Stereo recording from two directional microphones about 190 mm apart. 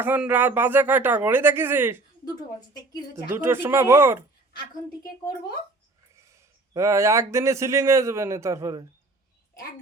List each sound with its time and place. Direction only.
0.0 s speech: 10° right (ahead or behind)
2.2 s a woman's voice: 20° left (ahead or behind)
3.3 s speech: 10° right (ahead or behind)
6.2 s speech: 15° right (ahead or behind)